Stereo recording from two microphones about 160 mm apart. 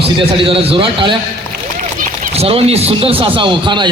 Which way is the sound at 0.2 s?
35° right (ahead or behind).